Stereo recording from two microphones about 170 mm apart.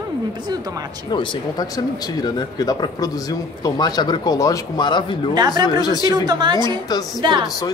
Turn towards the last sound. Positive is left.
turn(degrees=-30)  # may be behind; listen again after turning